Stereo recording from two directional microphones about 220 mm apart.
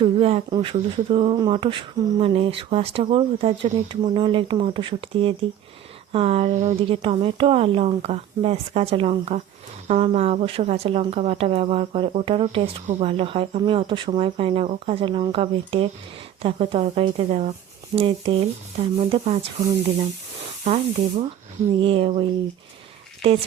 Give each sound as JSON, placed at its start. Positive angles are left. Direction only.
{"t": 0.0, "sound": "speech", "side_deg": -25}
{"t": 20.7, "sound": "speech", "side_deg": -30}